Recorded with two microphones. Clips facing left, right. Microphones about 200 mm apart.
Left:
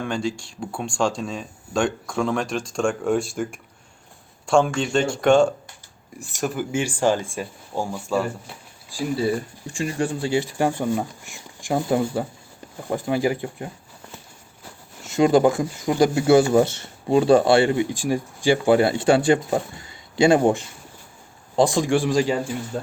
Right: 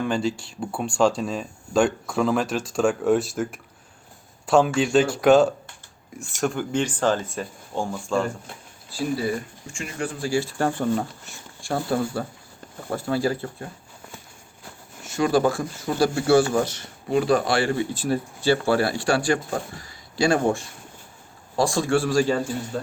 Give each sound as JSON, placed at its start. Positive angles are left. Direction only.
{"t": 0.0, "sound": "speech", "side_deg": -5}
{"t": 9.7, "sound": "speech", "side_deg": 30}
{"t": 15.0, "sound": "speech", "side_deg": 20}